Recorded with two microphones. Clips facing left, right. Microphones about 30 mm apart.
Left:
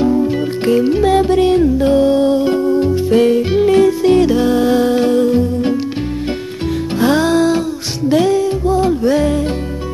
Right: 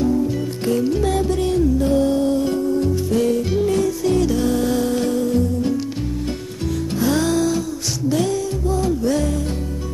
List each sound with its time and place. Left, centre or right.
0.0 s music: left
7.0 s music: left